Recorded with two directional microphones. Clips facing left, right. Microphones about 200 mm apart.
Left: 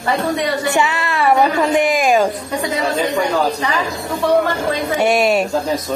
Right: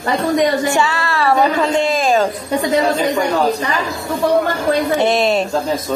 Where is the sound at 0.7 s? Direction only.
20° left (ahead or behind).